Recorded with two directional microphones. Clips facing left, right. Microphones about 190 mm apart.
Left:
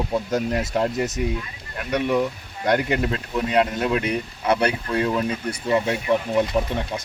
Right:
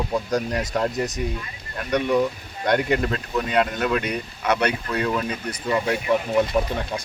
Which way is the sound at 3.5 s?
30° left (ahead or behind).